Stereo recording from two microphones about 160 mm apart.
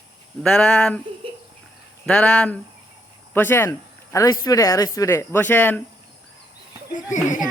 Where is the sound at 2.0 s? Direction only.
5° left (ahead or behind).